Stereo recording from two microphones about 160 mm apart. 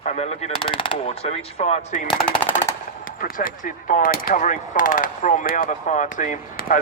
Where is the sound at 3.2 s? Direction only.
60° left (ahead or behind).